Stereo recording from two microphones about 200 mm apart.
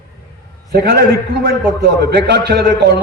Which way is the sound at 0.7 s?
55° right (ahead or behind).